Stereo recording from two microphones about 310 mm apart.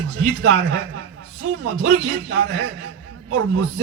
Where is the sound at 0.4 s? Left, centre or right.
Right.